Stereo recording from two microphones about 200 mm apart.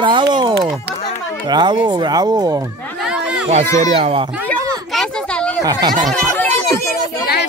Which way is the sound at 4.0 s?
30° right (ahead or behind).